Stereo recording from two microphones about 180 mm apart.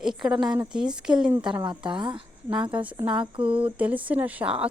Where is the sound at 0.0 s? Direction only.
Centre (ahead or behind).